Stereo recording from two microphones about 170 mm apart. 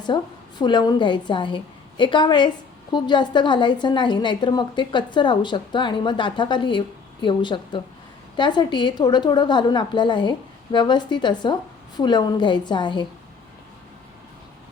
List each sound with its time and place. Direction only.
0.1 s a woman's voice: 25° left (ahead or behind)